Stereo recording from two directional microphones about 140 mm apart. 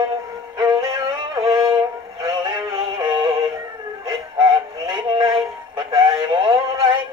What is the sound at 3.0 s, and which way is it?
Synthetic singing, 35° right (ahead or behind).